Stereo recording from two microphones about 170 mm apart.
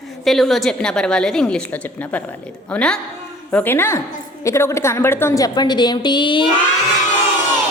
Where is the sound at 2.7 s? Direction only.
5° left (ahead or behind); by 6.4 s 30° left (ahead or behind).